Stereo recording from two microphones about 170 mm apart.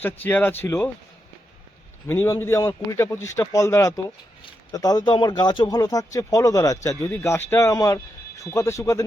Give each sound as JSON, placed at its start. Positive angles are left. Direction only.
{"t": 0.0, "sound": "a man's voice", "side_deg": 10}
{"t": 2.0, "sound": "a man's voice", "side_deg": 15}